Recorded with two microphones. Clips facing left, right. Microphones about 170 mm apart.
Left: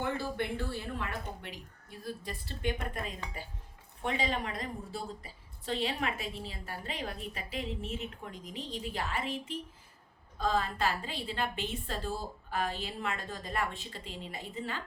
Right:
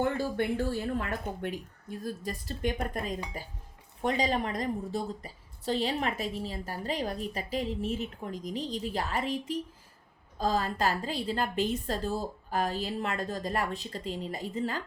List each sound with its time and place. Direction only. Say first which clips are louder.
0.0 s a woman's voice: right 5 dB; 45° right (ahead or behind)